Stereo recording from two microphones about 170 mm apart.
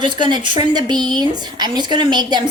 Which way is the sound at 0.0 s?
25° right (ahead or behind).